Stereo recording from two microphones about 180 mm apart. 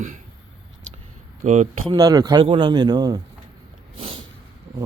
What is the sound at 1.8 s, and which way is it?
A man's voice, 20° right (ahead or behind).